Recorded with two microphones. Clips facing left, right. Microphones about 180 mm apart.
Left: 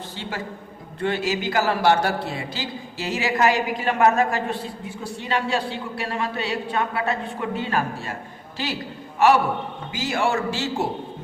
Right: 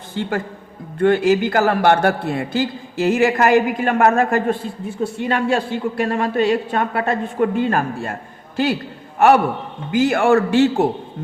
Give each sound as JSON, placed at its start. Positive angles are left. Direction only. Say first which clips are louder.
{"t": 0.1, "sound": "a man's voice", "louder": "right 12 dB", "side_deg": -55}
{"t": 9.1, "sound": "a man's voice", "louder": "right 4 dB", "side_deg": -55}